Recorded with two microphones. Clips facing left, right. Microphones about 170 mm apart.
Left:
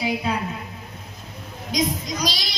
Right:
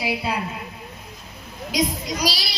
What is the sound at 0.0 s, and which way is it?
Speech, 10° right (ahead or behind).